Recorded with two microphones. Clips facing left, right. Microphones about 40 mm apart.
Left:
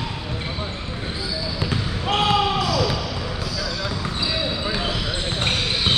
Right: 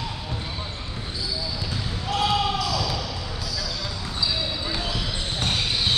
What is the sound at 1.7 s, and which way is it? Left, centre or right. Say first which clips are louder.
Basketball bounce: left 7 dB; left.